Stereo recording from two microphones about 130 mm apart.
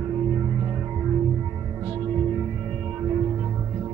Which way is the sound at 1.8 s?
30° right (ahead or behind).